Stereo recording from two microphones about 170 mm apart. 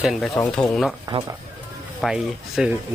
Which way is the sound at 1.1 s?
35° right (ahead or behind).